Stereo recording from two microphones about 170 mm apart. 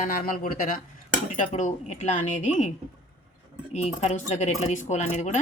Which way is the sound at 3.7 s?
40° left (ahead or behind).